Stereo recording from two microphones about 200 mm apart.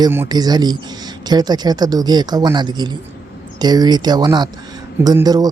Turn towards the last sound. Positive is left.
turn(degrees=-20)  # may be behind; listen again after turning